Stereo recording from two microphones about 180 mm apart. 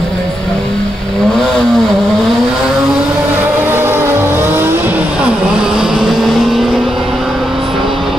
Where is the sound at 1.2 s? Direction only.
Centre (ahead or behind).